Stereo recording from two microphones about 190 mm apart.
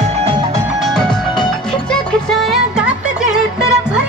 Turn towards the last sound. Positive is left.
turn(degrees=-5)  # may be behind; listen again after turning